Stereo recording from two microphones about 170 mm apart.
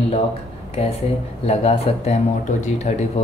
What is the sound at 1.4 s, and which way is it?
Speech, 35° left (ahead or behind).